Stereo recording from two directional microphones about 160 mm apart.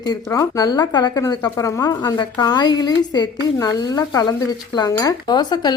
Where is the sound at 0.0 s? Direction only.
25° left (ahead or behind).